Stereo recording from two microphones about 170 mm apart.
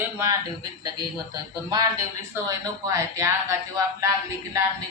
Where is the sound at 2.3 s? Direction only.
20° right (ahead or behind).